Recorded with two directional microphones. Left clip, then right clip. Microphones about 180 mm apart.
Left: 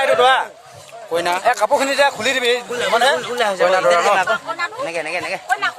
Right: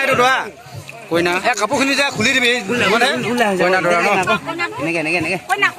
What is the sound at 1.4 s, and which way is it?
A man's voice, 35° left (ahead or behind).